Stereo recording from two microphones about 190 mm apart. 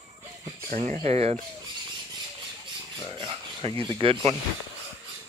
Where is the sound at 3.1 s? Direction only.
25° right (ahead or behind).